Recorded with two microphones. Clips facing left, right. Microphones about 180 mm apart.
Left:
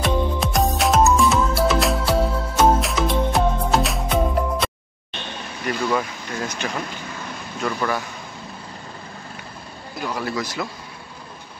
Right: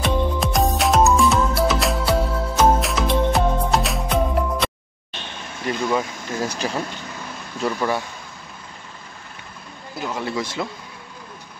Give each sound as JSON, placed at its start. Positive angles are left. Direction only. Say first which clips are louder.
{"t": 0.0, "sound": "music", "louder": "even", "side_deg": 0}
{"t": 5.9, "sound": "speech", "louder": "right 1 dB", "side_deg": -30}
{"t": 10.0, "sound": "speech", "louder": "even", "side_deg": -25}